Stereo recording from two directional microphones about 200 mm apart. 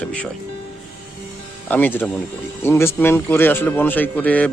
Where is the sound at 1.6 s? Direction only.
10° left (ahead or behind).